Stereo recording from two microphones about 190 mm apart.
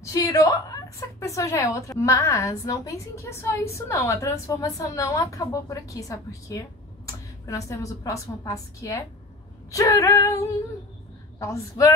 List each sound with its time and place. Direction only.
0.0 s a woman's voice: 20° left (ahead or behind)